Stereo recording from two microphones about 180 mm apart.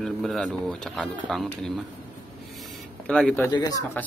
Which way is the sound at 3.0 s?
5° left (ahead or behind).